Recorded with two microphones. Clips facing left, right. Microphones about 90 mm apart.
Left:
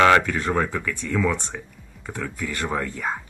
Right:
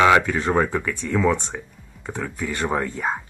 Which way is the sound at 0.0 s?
15° right (ahead or behind).